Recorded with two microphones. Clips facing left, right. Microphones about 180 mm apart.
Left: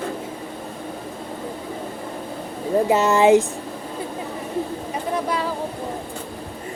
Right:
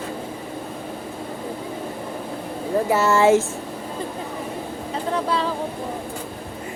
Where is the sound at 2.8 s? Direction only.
20° left (ahead or behind).